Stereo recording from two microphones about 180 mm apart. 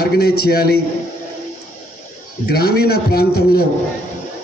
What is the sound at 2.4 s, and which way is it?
A man's voice, 60° left (ahead or behind).